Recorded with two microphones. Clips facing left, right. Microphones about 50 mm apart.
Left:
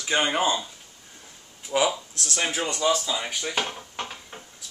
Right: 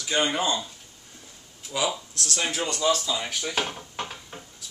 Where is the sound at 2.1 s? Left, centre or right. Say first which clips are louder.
Left 1 dB; left; by 4.4 s centre.